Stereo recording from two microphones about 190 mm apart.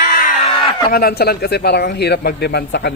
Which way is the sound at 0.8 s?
55° left (ahead or behind).